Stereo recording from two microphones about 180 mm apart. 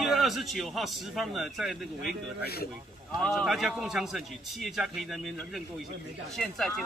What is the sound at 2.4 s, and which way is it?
Speech, 60° left (ahead or behind).